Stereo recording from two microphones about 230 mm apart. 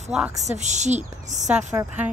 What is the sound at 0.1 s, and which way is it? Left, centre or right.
Speech, centre.